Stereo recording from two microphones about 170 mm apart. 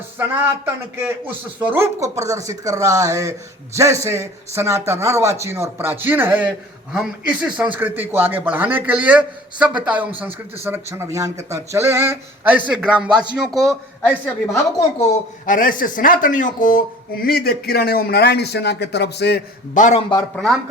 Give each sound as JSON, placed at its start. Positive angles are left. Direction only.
{"t": 0.2, "sound": "a man's voice", "side_deg": -15}
{"t": 14.3, "sound": "a woman's voice", "side_deg": 15}
{"t": 15.4, "sound": "speech", "side_deg": 55}
{"t": 17.2, "sound": "a man's voice", "side_deg": 65}
{"t": 19.7, "sound": "speech", "side_deg": 45}
{"t": 20.3, "sound": "a man's voice", "side_deg": 5}